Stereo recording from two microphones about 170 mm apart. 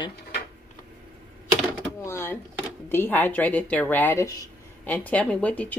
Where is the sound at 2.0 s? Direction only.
15° left (ahead or behind).